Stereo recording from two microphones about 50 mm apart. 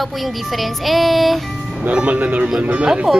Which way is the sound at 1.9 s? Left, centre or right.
Right.